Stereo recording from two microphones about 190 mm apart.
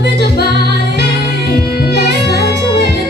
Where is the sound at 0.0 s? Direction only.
60° left (ahead or behind).